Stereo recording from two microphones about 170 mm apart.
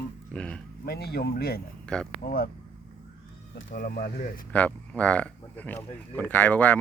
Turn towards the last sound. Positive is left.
turn(degrees=10)  # may be behind; listen again after turning